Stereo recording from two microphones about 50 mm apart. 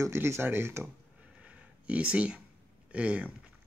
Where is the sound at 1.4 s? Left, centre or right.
Right.